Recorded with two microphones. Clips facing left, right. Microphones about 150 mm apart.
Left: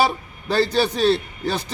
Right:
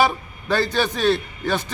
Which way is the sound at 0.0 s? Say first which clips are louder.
Right 1 dB; 35° left (ahead or behind).